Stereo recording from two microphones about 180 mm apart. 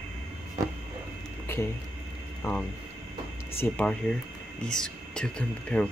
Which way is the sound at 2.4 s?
15° left (ahead or behind).